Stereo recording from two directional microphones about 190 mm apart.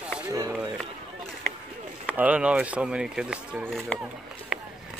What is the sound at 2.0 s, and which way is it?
Speech, 10° right (ahead or behind).